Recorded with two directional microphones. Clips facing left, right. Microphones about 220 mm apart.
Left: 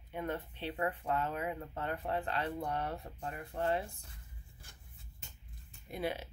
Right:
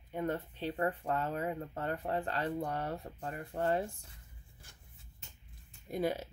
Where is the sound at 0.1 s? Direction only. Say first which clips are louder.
Right 3 dB; 40° right (ahead or behind).